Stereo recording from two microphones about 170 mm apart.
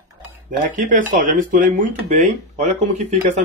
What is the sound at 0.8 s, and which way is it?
Speech, 50° right (ahead or behind).